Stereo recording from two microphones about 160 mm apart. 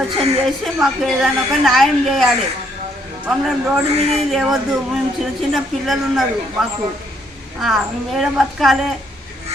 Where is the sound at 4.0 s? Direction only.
40° right (ahead or behind).